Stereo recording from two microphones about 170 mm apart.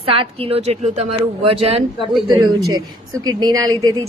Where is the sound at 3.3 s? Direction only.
25° right (ahead or behind).